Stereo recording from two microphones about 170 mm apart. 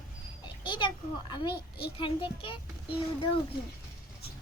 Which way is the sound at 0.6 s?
30° left (ahead or behind).